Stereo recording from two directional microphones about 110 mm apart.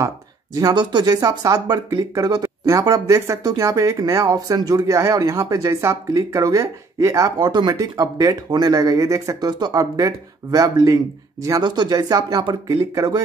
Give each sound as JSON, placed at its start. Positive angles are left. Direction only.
{"t": 0.6, "sound": "speech", "side_deg": -40}